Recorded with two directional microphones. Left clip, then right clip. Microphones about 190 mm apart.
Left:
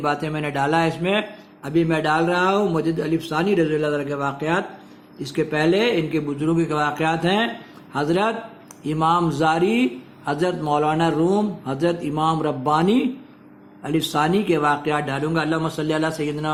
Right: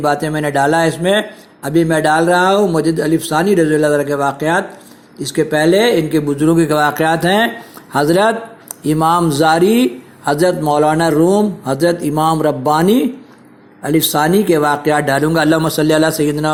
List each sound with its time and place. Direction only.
0.0 s a man's voice: 20° right (ahead or behind)